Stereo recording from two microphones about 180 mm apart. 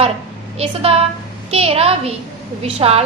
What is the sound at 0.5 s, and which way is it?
A woman's voice, 35° right (ahead or behind).